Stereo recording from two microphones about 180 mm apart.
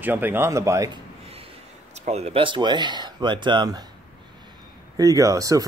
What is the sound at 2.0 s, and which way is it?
Speech, 35° right (ahead or behind).